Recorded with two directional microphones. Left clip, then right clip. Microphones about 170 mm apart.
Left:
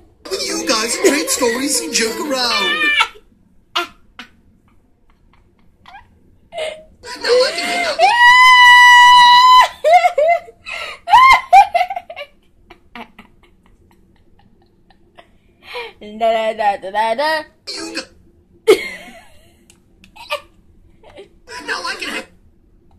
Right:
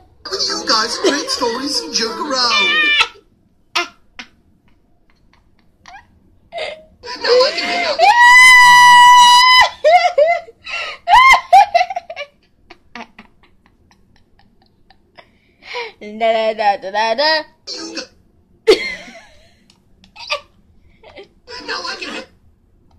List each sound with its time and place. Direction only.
0.3 s music: 25° left (ahead or behind)
1.0 s a woman's voice: centre (ahead or behind)
1.3 s speech: 25° left (ahead or behind)
2.4 s a child's voice: 10° right (ahead or behind)
3.7 s a sound: 5° right (ahead or behind)
6.6 s wail: 5° right (ahead or behind)
7.3 s a sound: 5° right (ahead or behind)
18.7 s a sound: 15° right (ahead or behind)
21.0 s crying: 10° right (ahead or behind)
21.5 s chuckle: 10° left (ahead or behind)